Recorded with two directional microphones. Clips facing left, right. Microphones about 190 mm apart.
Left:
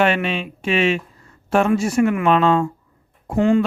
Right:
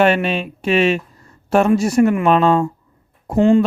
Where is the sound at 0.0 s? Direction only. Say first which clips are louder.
Right 3 dB; 40° right (ahead or behind).